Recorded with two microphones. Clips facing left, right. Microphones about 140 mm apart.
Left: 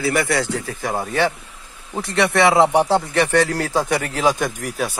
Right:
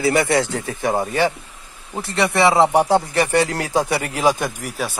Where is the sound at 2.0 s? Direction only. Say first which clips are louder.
Left 1 dB; centre (ahead or behind).